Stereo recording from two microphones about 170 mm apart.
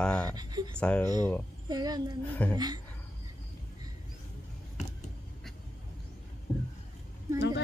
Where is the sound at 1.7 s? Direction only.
25° right (ahead or behind).